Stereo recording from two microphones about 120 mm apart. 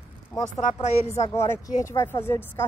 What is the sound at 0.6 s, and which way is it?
Speech, 85° left.